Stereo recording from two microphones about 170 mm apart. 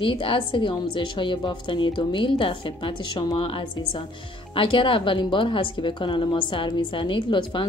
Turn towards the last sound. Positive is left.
turn(degrees=30)  # may be behind; listen again after turning